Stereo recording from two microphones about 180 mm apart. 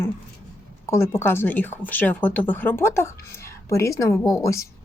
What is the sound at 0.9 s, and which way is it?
A woman's voice, 15° left (ahead or behind).